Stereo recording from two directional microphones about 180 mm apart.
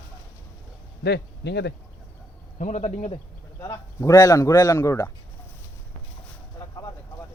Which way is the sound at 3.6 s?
20° left (ahead or behind).